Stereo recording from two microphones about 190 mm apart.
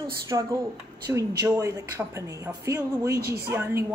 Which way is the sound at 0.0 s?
15° right (ahead or behind).